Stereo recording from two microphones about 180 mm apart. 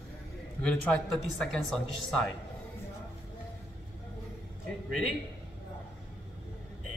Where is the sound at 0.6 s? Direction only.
5° left (ahead or behind).